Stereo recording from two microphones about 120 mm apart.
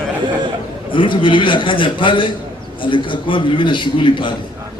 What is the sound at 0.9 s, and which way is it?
A man's voice, 45° left (ahead or behind).